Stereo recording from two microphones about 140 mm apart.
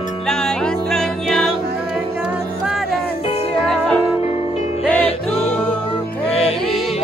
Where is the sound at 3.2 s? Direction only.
45° left (ahead or behind).